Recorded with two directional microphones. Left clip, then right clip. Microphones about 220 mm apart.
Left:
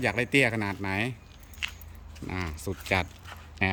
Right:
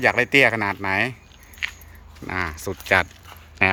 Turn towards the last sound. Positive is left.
turn(degrees=5)  # may be behind; listen again after turning